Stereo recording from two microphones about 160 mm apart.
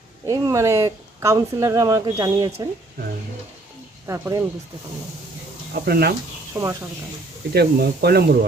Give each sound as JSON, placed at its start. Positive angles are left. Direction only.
{"t": 0.3, "sound": "speech", "side_deg": -20}
{"t": 4.0, "sound": "speech", "side_deg": -15}
{"t": 5.7, "sound": "speech", "side_deg": -70}
{"t": 6.5, "sound": "speech", "side_deg": -20}
{"t": 7.5, "sound": "speech", "side_deg": -80}